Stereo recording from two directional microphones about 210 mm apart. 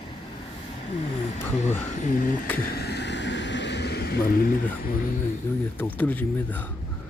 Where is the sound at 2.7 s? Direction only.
50° left (ahead or behind).